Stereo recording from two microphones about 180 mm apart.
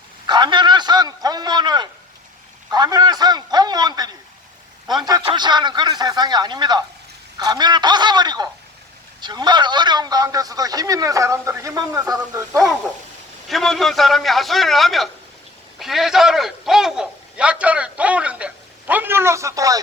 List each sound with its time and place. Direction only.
0.3 s a man's voice: 25° right (ahead or behind)
2.7 s a sound: 20° right (ahead or behind)
5.0 s a man's voice: 25° right (ahead or behind)
7.3 s a sound: 20° right (ahead or behind)
9.2 s a man's voice: 25° right (ahead or behind)
13.5 s a man's voice: centre (ahead or behind); by 19.8 s 20° right (ahead or behind)